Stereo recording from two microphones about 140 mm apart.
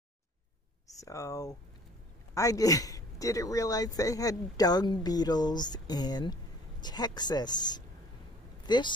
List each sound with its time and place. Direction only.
1.0 s a man's voice: 25° left (ahead or behind)